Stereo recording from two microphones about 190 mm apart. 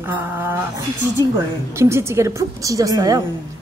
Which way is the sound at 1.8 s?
15° right (ahead or behind).